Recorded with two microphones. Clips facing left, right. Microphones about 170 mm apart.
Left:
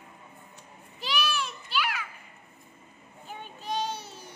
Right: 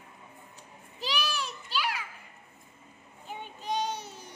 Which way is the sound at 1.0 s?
35° right (ahead or behind).